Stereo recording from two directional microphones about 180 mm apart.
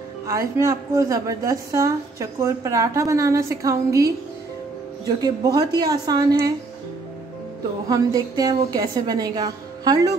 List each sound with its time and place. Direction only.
0.3 s a woman's voice: 15° right (ahead or behind)
7.9 s a woman's voice: 20° right (ahead or behind)